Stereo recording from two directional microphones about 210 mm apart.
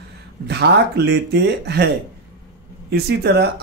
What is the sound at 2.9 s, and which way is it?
Speech, 50° right (ahead or behind).